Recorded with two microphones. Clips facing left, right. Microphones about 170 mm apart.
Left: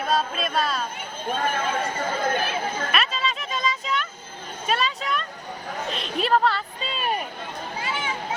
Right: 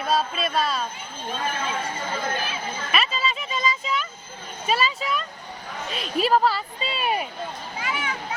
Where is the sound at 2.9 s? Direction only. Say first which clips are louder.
Even; centre (ahead or behind).